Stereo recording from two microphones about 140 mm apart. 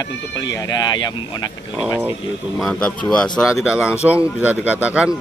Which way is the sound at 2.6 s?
5° left (ahead or behind).